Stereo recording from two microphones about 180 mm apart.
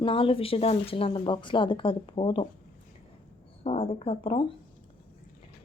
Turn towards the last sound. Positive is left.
turn(degrees=30)  # may be behind; listen again after turning